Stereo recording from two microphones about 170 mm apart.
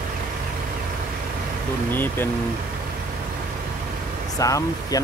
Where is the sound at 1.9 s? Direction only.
10° left (ahead or behind).